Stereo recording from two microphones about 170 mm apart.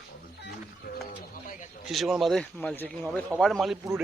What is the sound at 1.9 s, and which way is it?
A man's voice, centre (ahead or behind).